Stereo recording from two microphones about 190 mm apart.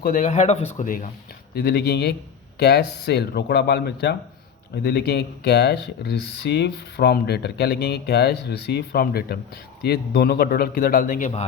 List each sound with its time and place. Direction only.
0.0 s a man's voice: 40° left (ahead or behind)
1.5 s a man's voice: 55° left (ahead or behind)